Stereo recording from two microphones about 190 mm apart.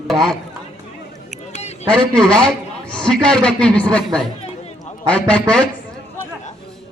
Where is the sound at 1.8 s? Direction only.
5° left (ahead or behind).